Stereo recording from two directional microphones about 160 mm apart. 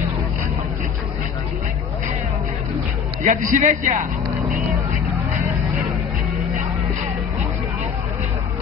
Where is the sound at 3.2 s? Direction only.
50° right (ahead or behind).